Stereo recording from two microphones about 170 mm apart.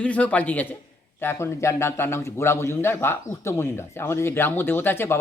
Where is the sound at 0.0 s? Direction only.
10° left (ahead or behind).